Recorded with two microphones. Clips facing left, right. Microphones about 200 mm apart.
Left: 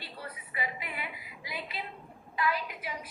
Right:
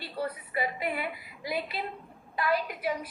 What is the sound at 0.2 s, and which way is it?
A woman's voice, 40° right (ahead or behind).